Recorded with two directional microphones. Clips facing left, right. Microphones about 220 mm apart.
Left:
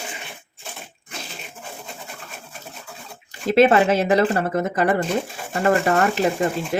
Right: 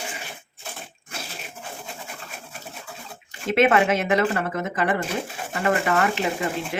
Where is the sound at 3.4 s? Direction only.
35° left (ahead or behind).